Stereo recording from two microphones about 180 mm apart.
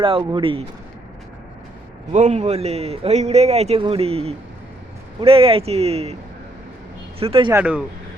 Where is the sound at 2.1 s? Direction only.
40° right (ahead or behind).